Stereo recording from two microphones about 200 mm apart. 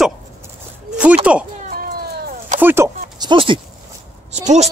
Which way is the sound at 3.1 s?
25° right (ahead or behind).